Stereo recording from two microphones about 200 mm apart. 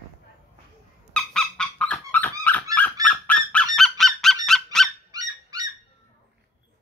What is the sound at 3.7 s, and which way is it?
Honk, centre (ahead or behind).